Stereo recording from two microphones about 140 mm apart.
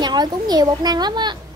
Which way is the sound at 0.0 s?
30° right (ahead or behind).